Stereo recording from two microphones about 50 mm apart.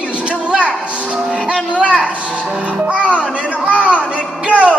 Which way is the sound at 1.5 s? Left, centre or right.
Centre.